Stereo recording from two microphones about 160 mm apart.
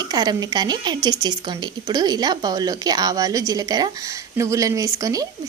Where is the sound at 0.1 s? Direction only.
25° right (ahead or behind).